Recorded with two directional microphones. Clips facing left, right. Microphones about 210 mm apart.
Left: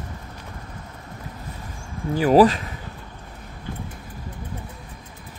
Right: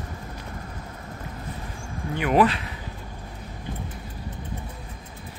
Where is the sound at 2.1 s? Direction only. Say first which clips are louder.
Left 6 dB; 35° left (ahead or behind).